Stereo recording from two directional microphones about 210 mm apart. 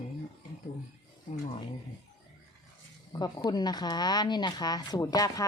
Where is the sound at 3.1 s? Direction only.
20° left (ahead or behind).